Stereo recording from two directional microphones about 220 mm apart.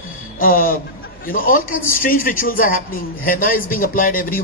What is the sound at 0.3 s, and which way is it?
A woman's voice, 40° left (ahead or behind).